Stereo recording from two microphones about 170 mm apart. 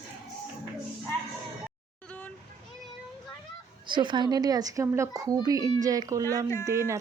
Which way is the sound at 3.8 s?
30° right (ahead or behind).